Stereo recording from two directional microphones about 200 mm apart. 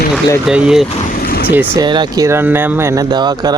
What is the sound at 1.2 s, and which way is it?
Vehicle, 45° left (ahead or behind).